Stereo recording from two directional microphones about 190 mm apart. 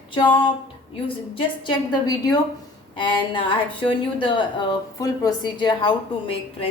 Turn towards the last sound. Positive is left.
turn(degrees=30)  # may be behind; listen again after turning